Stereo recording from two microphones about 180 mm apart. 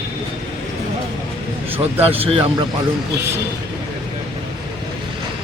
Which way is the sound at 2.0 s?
35° right (ahead or behind).